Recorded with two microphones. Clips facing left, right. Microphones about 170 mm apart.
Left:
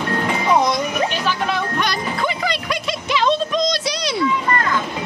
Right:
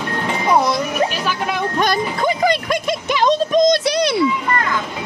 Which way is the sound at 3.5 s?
50° right (ahead or behind).